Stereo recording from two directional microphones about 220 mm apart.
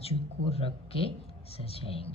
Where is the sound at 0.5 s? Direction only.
25° left (ahead or behind).